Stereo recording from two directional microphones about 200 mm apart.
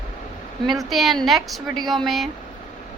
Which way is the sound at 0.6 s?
Centre (ahead or behind).